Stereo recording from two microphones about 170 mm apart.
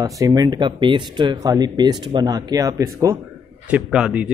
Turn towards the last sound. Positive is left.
turn(degrees=-5)  # may be behind; listen again after turning